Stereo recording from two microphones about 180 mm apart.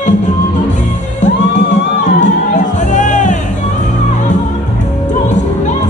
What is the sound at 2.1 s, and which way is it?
Music, 45° left (ahead or behind).